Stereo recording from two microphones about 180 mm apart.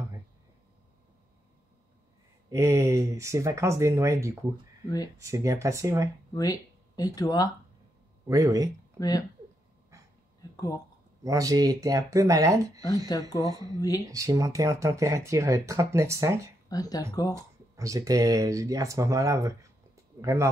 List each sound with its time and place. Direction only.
2.5 s speech: 15° right (ahead or behind)
6.3 s a sound: 20° left (ahead or behind)
7.2 s speech: 20° left (ahead or behind)
8.3 s speech: 20° right (ahead or behind)
10.5 s speech: 20° left (ahead or behind)
11.2 s speech: 20° right (ahead or behind)
13.7 s speech: 20° left (ahead or behind)
14.0 s speech: 20° right (ahead or behind)
16.6 s speech: 20° left (ahead or behind)
17.3 s speech: 15° right (ahead or behind)